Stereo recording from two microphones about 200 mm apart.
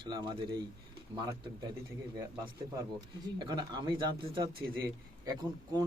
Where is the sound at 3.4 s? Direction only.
20° right (ahead or behind).